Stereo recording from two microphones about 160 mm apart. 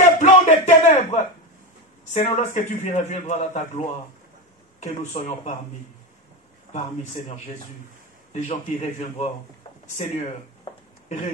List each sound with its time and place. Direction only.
0.0 s a sound: 45° left (ahead or behind)
2.1 s a man's voice: 45° left (ahead or behind)
7.2 s a man's voice: 40° left (ahead or behind)
11.1 s speech: 45° left (ahead or behind)